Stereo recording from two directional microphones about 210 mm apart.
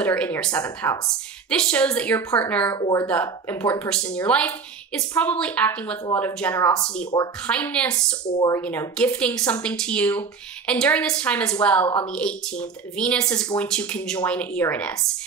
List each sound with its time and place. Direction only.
0.0 s speech: 5° left (ahead or behind)
7.4 s speech: 5° left (ahead or behind)